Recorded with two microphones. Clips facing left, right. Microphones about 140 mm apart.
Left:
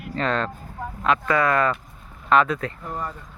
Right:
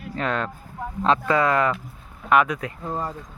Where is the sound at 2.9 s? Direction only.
25° right (ahead or behind).